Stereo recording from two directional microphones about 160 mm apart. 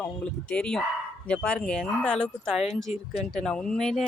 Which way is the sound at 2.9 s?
45° left (ahead or behind).